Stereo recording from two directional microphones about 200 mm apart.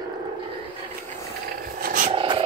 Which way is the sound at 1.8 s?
40° right (ahead or behind).